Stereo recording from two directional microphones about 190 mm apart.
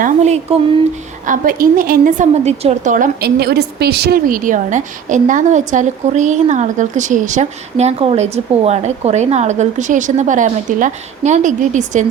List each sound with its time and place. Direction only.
0.0 s a woman's voice: 35° right (ahead or behind)
1.3 s a woman's voice: 50° right (ahead or behind)